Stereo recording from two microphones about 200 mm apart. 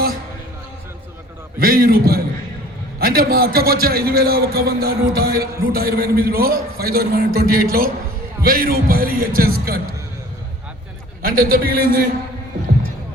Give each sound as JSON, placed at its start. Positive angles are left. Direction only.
{"t": 1.5, "sound": "a man's voice", "side_deg": -50}
{"t": 11.2, "sound": "a man's voice", "side_deg": -45}